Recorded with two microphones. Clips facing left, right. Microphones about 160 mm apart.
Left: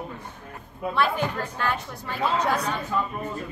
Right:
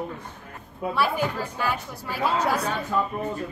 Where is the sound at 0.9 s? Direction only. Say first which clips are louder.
Even; 5° right (ahead or behind).